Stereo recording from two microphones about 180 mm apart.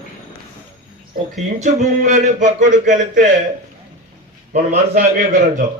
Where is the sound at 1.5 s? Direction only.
40° right (ahead or behind).